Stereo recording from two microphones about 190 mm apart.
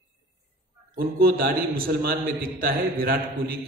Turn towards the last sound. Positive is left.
turn(degrees=-50)  # may be behind; listen again after turning